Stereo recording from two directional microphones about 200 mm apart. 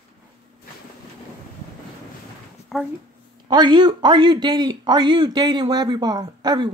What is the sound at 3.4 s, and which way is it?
Speech, 20° right (ahead or behind).